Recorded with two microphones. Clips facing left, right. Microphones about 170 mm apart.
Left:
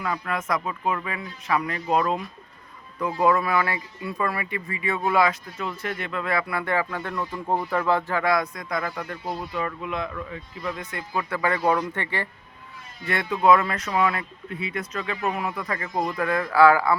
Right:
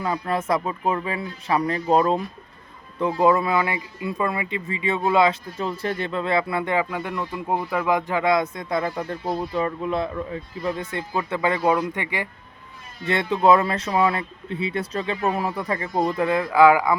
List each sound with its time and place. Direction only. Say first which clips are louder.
0.0 s a man's voice: right 4 dB; 30° right (ahead or behind); by 12.3 s 15° right (ahead or behind)
13.1 s speech: right 2 dB; 25° right (ahead or behind)